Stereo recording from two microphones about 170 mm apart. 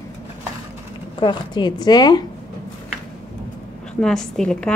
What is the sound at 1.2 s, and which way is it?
Speech, 25° left (ahead or behind).